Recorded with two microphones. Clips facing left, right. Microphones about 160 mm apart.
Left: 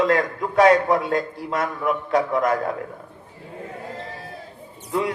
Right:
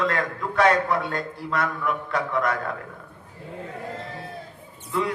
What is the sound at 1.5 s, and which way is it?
Speech, 35° left (ahead or behind).